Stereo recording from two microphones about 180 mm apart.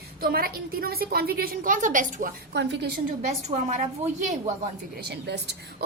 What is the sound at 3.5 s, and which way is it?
Speech, 40° right (ahead or behind).